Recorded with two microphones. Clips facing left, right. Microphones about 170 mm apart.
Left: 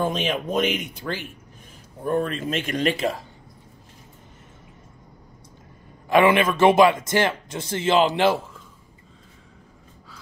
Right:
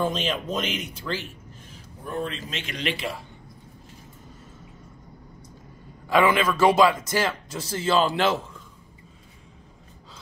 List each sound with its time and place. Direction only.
0.0 s speech: 60° left (ahead or behind); by 3.3 s 40° left (ahead or behind)
6.0 s speech: 25° left (ahead or behind)